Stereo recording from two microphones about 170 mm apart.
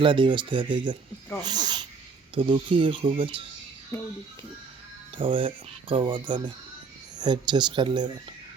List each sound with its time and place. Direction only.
0.0 s speech: 30° right (ahead or behind)
5.1 s speech: 30° right (ahead or behind)